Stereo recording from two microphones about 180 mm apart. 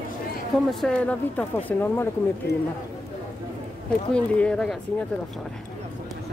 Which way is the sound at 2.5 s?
65° left (ahead or behind).